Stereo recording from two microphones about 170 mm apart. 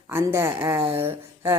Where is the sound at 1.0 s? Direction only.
15° right (ahead or behind).